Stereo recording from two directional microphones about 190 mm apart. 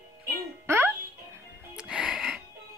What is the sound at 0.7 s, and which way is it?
Music, 15° right (ahead or behind).